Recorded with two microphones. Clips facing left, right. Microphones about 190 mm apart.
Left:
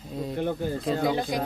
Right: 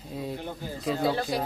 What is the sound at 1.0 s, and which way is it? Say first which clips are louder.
Speech: right 1 dB; 15° left (ahead or behind).